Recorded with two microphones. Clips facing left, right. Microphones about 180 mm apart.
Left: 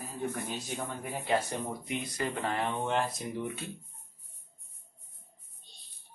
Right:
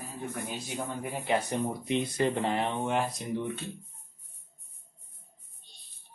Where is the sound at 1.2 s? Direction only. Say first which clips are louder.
Right 2 dB; 20° right (ahead or behind).